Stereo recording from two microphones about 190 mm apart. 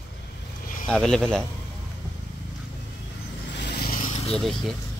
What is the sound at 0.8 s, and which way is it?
Speech, 5° left (ahead or behind).